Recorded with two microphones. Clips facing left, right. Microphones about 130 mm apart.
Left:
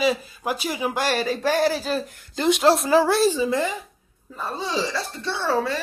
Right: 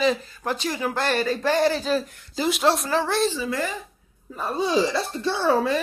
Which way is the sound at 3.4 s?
20° left (ahead or behind).